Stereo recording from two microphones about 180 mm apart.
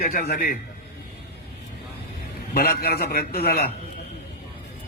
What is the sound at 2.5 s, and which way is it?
A man's voice, 60° left (ahead or behind).